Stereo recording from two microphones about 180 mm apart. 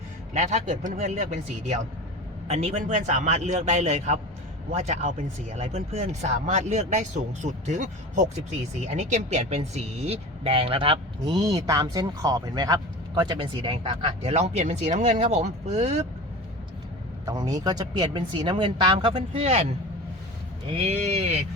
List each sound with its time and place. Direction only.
0.3 s speech: 40° right (ahead or behind)
11.3 s speech: 20° right (ahead or behind); by 16.0 s 40° right (ahead or behind)
17.2 s speech: 20° right (ahead or behind)
20.7 s speech: 35° right (ahead or behind)